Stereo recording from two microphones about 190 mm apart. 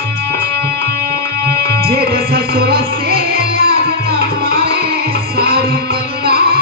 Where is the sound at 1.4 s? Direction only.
55° right (ahead or behind).